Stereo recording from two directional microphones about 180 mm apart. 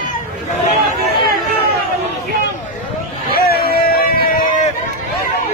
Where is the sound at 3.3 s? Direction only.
60° left (ahead or behind).